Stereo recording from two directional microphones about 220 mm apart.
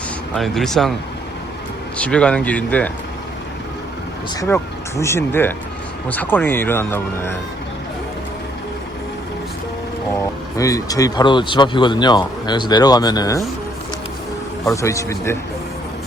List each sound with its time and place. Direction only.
0.3 s speech: centre (ahead or behind)
2.0 s speech: 5° left (ahead or behind)
4.4 s speech: 10° left (ahead or behind)
10.6 s speech: 15° left (ahead or behind)
14.7 s speech: 15° left (ahead or behind)